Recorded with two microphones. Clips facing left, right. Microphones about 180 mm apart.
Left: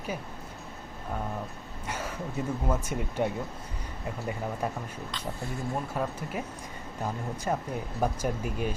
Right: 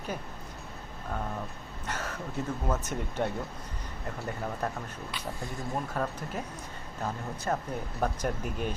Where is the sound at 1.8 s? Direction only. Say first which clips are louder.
Left 1 dB; 10° left (ahead or behind).